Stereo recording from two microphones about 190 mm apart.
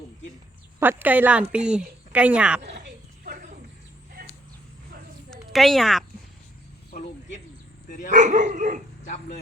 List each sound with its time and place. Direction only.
0.8 s a woman's voice: 10° right (ahead or behind)
4.2 s a sound: 50° right (ahead or behind)
5.3 s speech: centre (ahead or behind)
6.9 s speech: 50° left (ahead or behind)
8.1 s speech: 40° right (ahead or behind)
9.0 s speech: 40° left (ahead or behind)